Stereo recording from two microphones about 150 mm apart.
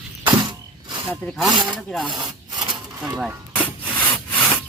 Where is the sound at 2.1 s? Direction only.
25° right (ahead or behind).